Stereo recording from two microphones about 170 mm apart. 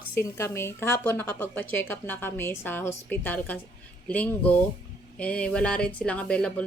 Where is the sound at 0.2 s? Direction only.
15° left (ahead or behind).